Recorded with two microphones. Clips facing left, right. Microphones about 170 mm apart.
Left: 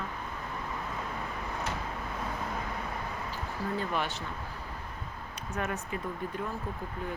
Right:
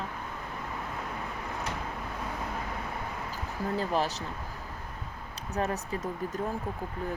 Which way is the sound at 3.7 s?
35° right (ahead or behind).